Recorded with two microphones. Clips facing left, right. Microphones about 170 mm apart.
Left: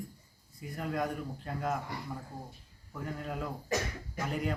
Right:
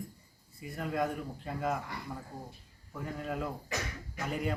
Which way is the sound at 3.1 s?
Centre (ahead or behind).